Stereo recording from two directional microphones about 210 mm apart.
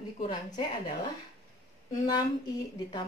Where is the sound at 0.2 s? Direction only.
20° left (ahead or behind).